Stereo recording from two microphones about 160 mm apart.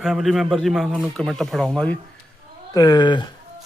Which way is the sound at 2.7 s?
25° left (ahead or behind).